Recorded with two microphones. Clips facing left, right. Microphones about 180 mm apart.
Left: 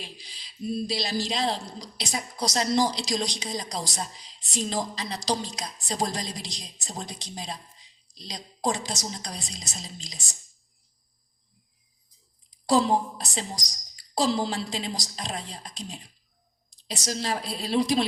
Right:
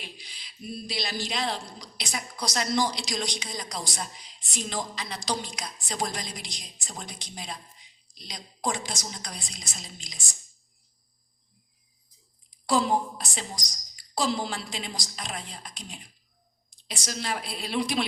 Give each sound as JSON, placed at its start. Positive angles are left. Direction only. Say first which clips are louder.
{"t": 0.0, "sound": "a woman's voice", "louder": "left 2 dB", "side_deg": 35}
{"t": 12.6, "sound": "a woman's voice", "louder": "left 2 dB", "side_deg": 35}